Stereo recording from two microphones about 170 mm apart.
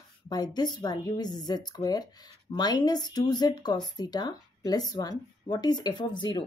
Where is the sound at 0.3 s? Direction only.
25° left (ahead or behind).